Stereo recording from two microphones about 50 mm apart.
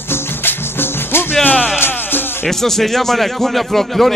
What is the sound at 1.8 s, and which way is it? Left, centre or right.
Music, left.